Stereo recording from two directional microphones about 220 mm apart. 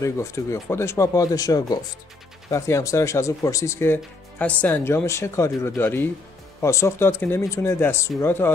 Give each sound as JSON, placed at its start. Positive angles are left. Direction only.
{"t": 0.0, "sound": "speech", "side_deg": 15}